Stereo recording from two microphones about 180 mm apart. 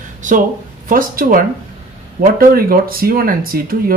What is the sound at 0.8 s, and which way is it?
Speech, 50° right (ahead or behind).